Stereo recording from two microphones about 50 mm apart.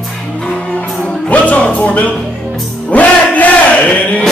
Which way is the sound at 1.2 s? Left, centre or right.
Left.